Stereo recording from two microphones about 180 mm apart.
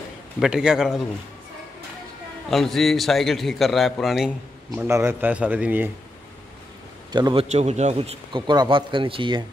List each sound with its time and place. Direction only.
0.4 s a man's voice: 5° right (ahead or behind)
2.5 s a man's voice: centre (ahead or behind)
4.7 s a man's voice: 15° right (ahead or behind)
7.1 s a man's voice: 25° right (ahead or behind)
7.4 s speech: 40° right (ahead or behind)